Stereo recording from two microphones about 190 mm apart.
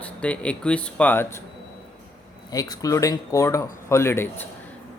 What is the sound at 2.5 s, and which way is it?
Speech, 20° left (ahead or behind).